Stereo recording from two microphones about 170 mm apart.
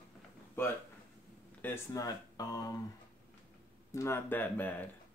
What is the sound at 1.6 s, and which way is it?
Speech, 15° left (ahead or behind).